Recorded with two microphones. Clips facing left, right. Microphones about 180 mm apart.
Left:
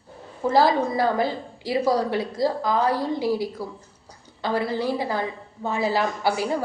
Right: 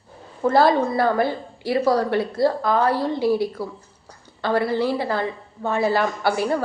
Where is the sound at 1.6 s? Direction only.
15° left (ahead or behind).